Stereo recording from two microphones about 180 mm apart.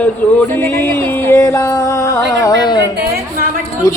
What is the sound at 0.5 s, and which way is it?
Music, 10° left (ahead or behind).